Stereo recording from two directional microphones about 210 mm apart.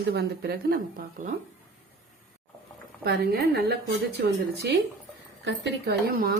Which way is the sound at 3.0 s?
50° right (ahead or behind).